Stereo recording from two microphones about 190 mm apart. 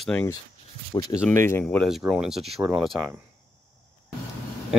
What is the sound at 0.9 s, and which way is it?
Speech, 20° left (ahead or behind).